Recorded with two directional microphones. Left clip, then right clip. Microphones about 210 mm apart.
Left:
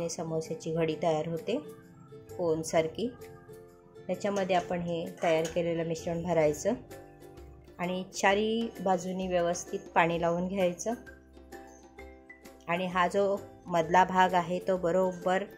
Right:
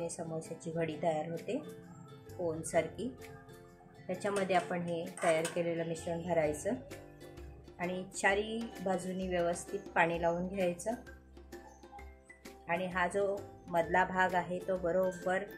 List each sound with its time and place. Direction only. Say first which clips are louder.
0.0 s speech: left 6 dB; 35° left (ahead or behind)
4.2 s speech: left 3 dB; 25° left (ahead or behind)
6.0 s speech: left 5 dB; 40° left (ahead or behind)
7.7 s speech: left 4 dB; 40° left (ahead or behind)
9.5 s a woman's voice: left 4 dB; centre (ahead or behind)
9.9 s speech: left 4 dB; 40° left (ahead or behind)
12.6 s speech: left 5 dB; 40° left (ahead or behind)